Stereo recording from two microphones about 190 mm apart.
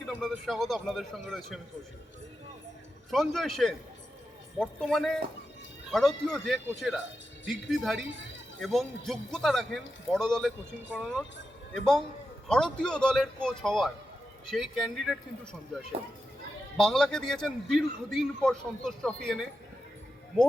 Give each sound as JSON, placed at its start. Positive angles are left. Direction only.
{"t": 0.0, "sound": "speech", "side_deg": 0}
{"t": 3.1, "sound": "a man's voice", "side_deg": 0}
{"t": 16.7, "sound": "a man's voice", "side_deg": 0}